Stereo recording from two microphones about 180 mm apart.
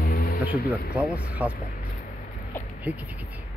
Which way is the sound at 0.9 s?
10° right (ahead or behind).